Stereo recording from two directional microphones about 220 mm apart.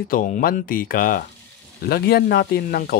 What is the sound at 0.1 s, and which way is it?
Speech, 40° left (ahead or behind).